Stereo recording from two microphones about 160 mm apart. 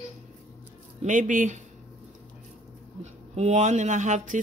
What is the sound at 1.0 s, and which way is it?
Speech, 50° right (ahead or behind).